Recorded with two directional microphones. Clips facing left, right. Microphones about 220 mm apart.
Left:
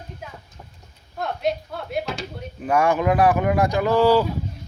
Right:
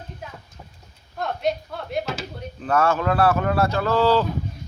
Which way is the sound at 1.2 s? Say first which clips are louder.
Even; centre (ahead or behind).